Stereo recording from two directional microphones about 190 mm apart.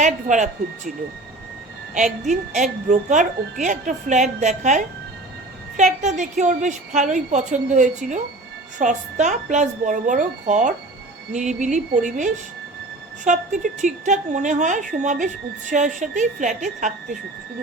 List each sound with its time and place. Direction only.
0.0 s a woman's voice: 40° right (ahead or behind)
2.2 s a woman's voice: 40° right (ahead or behind)